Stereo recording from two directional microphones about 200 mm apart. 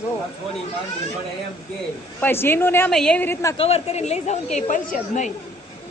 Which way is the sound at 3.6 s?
30° left (ahead or behind).